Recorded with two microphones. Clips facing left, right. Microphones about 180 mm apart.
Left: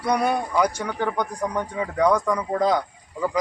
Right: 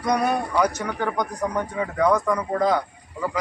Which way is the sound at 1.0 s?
10° right (ahead or behind).